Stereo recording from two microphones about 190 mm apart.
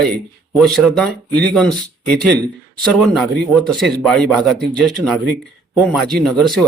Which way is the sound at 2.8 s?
5° left (ahead or behind).